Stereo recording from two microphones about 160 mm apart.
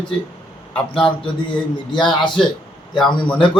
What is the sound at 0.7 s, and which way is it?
Speech, 30° left (ahead or behind).